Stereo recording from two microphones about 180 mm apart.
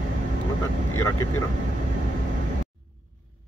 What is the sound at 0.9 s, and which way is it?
Speech, 15° left (ahead or behind).